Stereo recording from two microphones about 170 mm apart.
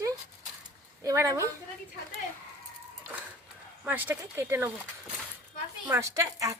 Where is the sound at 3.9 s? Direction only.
10° right (ahead or behind).